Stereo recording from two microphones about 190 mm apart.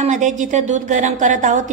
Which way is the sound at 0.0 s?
40° right (ahead or behind).